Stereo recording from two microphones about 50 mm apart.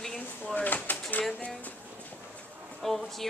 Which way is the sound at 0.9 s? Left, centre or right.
Left.